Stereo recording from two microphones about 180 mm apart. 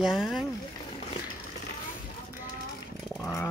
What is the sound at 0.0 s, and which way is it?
Speech, centre (ahead or behind).